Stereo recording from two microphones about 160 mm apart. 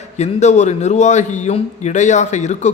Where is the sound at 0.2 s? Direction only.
45° left (ahead or behind).